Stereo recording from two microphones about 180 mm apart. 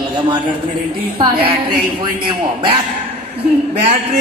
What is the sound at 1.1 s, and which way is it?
Speech, 30° right (ahead or behind).